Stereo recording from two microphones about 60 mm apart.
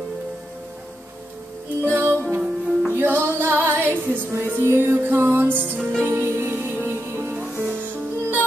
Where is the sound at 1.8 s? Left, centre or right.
Right.